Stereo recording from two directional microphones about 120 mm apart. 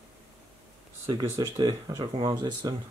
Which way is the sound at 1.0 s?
25° right (ahead or behind).